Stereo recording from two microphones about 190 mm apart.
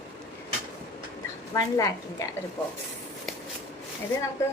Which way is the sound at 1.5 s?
20° left (ahead or behind).